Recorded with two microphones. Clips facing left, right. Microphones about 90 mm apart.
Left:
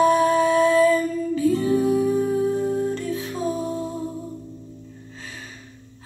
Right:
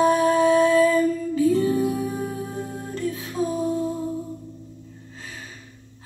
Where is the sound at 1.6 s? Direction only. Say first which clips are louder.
Left 3 dB; 25° left (ahead or behind).